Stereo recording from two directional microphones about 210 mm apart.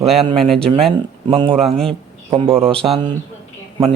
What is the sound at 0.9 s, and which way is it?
Speech, 25° right (ahead or behind).